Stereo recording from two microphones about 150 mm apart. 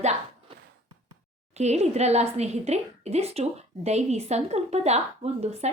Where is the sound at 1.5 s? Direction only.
45° right (ahead or behind).